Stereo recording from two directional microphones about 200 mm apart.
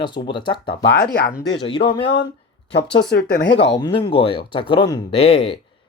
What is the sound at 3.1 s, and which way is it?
Speech, 50° left (ahead or behind).